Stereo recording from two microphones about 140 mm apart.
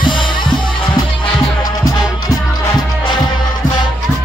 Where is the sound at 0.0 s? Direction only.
35° left (ahead or behind).